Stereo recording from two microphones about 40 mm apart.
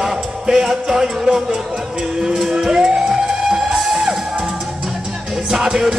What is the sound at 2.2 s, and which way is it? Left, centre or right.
Fire engine, centre.